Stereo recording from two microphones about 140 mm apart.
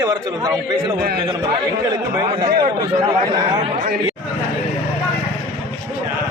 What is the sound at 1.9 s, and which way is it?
Speech, 30° right (ahead or behind).